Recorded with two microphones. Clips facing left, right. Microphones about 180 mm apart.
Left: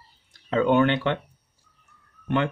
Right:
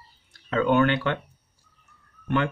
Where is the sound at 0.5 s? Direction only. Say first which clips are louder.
Left 1 dB; 20° left (ahead or behind).